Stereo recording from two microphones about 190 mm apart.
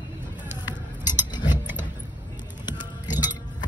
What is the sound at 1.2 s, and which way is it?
Tick-tock, 25° left (ahead or behind).